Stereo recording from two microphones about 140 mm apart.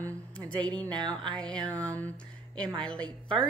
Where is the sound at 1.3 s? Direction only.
5° left (ahead or behind).